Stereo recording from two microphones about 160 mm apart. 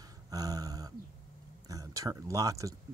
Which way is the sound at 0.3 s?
25° right (ahead or behind).